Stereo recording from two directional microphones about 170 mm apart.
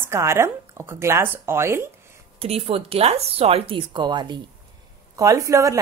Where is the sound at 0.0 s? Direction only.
15° right (ahead or behind).